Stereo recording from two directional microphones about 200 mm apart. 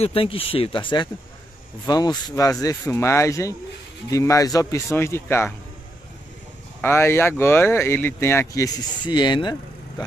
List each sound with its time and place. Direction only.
0.0 s speech: 25° left (ahead or behind)
6.8 s speech: 10° left (ahead or behind)